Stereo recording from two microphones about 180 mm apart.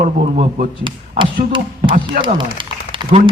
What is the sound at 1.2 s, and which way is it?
Speech, 30° right (ahead or behind).